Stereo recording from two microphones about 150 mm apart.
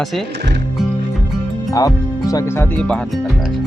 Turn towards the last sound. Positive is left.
turn(degrees=0)  # may be behind; listen again after turning